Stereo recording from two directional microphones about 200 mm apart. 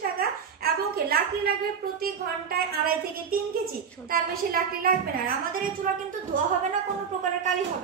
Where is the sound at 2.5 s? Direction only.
50° right (ahead or behind).